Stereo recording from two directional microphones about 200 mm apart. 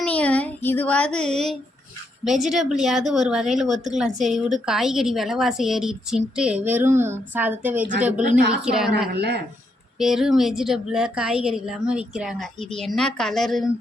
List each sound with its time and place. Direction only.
0.0 s a sound: 5° left (ahead or behind)
2.2 s a woman's voice: centre (ahead or behind)
9.1 s speech: 55° right (ahead or behind)
10.0 s a woman's voice: centre (ahead or behind)